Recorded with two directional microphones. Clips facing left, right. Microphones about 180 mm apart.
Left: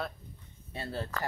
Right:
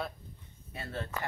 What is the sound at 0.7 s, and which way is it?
Speech, 35° left (ahead or behind).